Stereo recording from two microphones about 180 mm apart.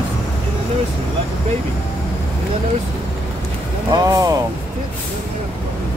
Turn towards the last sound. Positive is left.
turn(degrees=-20)  # may be behind; listen again after turning